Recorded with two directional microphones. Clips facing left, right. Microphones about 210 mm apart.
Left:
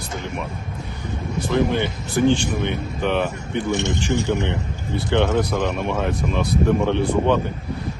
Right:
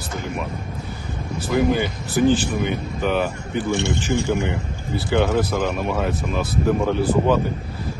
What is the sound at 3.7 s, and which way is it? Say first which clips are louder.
Speech: right 1 dB; 20° left (ahead or behind).